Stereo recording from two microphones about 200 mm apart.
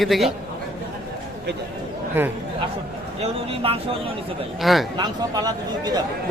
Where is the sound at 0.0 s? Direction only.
Centre (ahead or behind).